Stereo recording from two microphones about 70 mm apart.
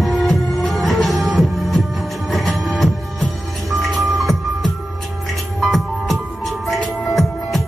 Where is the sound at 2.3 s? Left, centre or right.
Centre.